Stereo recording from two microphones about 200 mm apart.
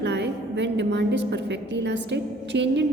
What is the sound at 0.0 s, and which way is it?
A woman's voice, 60° right (ahead or behind).